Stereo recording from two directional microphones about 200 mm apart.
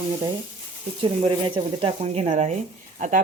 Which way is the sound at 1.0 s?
25° right (ahead or behind).